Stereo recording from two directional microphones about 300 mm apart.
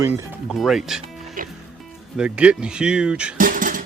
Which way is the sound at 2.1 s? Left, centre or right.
Centre.